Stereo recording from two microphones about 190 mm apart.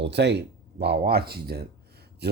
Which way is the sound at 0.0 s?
65° right (ahead or behind).